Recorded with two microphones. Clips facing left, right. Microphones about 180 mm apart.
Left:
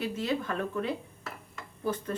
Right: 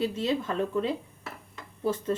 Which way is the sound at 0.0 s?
25° right (ahead or behind).